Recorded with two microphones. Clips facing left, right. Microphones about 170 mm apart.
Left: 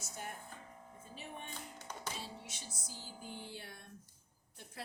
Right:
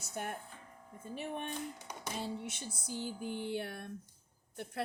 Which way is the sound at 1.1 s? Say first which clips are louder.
Right 9 dB; 60° right (ahead or behind).